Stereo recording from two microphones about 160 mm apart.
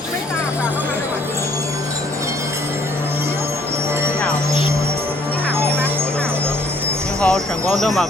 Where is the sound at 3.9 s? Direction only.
15° right (ahead or behind).